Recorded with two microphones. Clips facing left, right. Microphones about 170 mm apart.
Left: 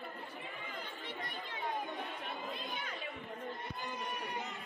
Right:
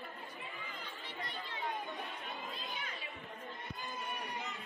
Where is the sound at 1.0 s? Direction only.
50° left (ahead or behind).